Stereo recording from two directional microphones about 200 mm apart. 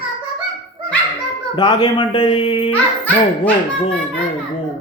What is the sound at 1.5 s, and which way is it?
Speech, 25° left (ahead or behind).